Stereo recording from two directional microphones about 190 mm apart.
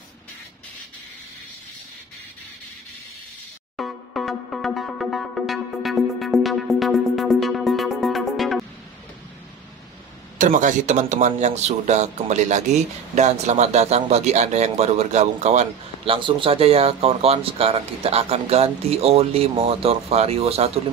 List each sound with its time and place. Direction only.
3.7 s music: centre (ahead or behind)
10.3 s a man's voice: 45° right (ahead or behind)